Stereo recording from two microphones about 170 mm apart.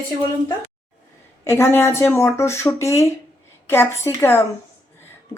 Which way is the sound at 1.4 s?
15° left (ahead or behind).